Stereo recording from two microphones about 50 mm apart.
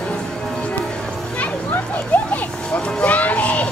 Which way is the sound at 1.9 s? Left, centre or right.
Left.